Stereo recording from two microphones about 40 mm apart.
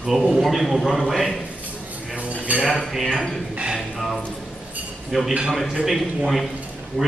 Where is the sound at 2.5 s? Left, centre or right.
Right.